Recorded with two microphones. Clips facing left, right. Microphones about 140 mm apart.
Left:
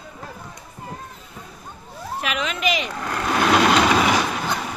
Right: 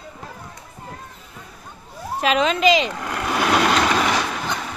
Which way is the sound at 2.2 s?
25° right (ahead or behind).